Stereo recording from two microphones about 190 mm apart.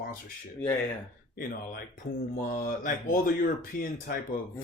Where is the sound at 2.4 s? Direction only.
45° left (ahead or behind).